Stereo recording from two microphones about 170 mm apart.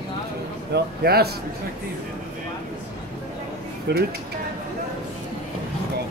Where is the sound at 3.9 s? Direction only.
80° right.